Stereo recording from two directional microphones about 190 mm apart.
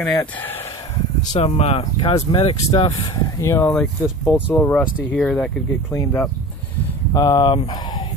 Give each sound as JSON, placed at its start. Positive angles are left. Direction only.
{"t": 0.0, "sound": "speech", "side_deg": 5}
{"t": 1.3, "sound": "speech", "side_deg": 35}
{"t": 3.3, "sound": "speech", "side_deg": 15}
{"t": 4.6, "sound": "speech", "side_deg": 10}
{"t": 7.2, "sound": "speech", "side_deg": 25}